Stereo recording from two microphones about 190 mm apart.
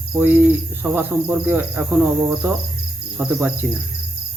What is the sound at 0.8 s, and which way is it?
Speech, 10° right (ahead or behind).